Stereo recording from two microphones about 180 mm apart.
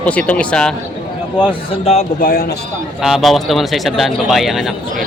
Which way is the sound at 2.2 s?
55° left (ahead or behind).